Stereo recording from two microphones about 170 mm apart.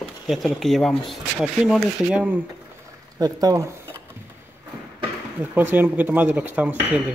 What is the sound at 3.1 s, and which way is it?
Speech, 20° right (ahead or behind).